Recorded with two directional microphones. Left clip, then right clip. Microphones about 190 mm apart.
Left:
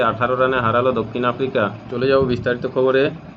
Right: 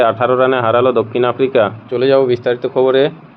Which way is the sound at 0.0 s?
45° right (ahead or behind).